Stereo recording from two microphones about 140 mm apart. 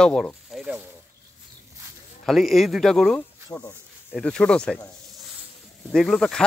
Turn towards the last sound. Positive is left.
turn(degrees=5)  # may be behind; listen again after turning